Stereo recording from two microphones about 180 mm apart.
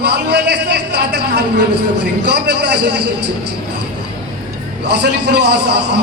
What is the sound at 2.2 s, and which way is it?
Speech, 70° right (ahead or behind).